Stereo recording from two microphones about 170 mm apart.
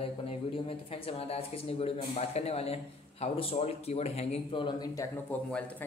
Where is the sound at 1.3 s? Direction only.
35° left (ahead or behind).